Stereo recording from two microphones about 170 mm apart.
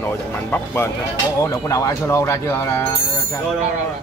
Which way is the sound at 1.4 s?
20° left (ahead or behind).